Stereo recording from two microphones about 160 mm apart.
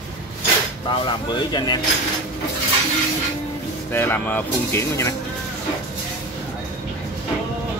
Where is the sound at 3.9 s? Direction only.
15° left (ahead or behind).